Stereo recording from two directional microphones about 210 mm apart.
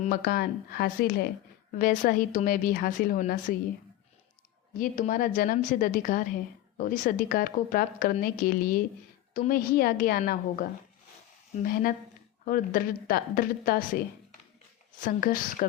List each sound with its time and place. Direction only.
0.0 s a woman's voice: 45° left (ahead or behind)
4.8 s a woman's voice: 40° left (ahead or behind)
15.0 s a woman's voice: 40° left (ahead or behind)